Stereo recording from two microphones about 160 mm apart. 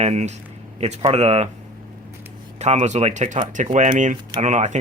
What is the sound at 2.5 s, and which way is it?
Speech, 45° right (ahead or behind).